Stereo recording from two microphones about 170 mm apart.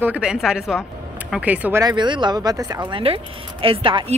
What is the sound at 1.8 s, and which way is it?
Speech, 25° right (ahead or behind).